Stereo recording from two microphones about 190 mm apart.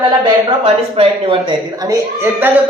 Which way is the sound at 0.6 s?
30° right (ahead or behind).